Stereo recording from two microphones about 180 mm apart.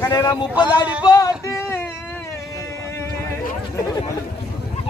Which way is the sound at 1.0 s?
20° left (ahead or behind).